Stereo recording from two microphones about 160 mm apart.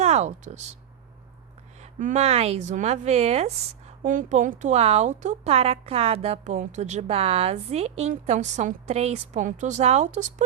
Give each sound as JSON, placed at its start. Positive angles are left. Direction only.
{"t": 0.0, "sound": "speech", "side_deg": -45}
{"t": 1.8, "sound": "a sound", "side_deg": -50}
{"t": 2.2, "sound": "a woman's voice", "side_deg": -40}